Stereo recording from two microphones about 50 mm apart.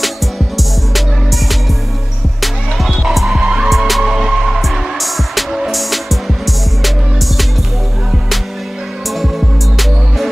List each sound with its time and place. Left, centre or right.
0.6 s music: centre
3.3 s music: centre
3.6 s music: centre
9.2 s music: centre